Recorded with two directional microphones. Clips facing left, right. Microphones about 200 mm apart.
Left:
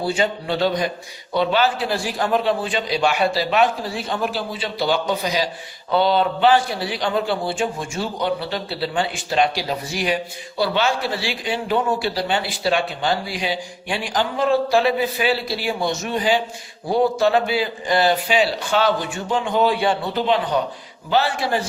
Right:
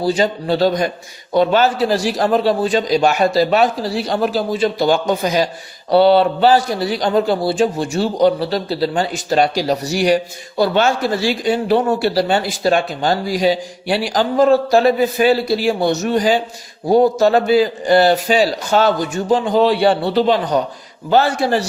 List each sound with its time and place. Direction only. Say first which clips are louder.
0.0 s a man's voice: right 5 dB; 40° right (ahead or behind)
5.9 s a man's voice: right 7 dB; 40° right (ahead or behind)